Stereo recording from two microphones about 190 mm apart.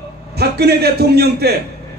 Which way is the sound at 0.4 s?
55° right (ahead or behind).